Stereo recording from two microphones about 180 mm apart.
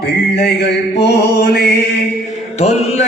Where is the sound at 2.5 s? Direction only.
35° left (ahead or behind).